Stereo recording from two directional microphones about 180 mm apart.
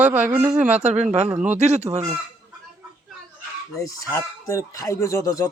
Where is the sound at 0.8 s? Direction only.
40° right (ahead or behind).